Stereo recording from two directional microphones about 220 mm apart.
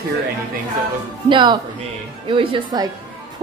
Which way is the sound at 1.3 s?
20° right (ahead or behind).